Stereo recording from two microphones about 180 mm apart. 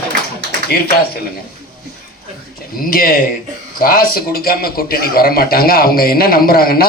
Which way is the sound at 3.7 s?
55° left (ahead or behind).